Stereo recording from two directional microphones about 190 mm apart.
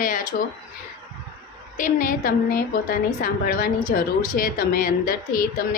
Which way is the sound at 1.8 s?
45° left (ahead or behind).